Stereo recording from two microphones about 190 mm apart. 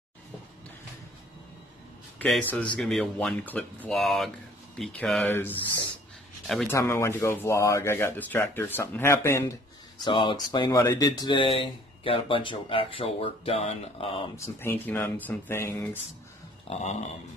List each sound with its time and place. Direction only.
2.1 s a man's voice: 5° left (ahead or behind)
6.7 s speech: 15° left (ahead or behind)
14.3 s speech: 15° left (ahead or behind)
16.6 s a sound: 35° left (ahead or behind)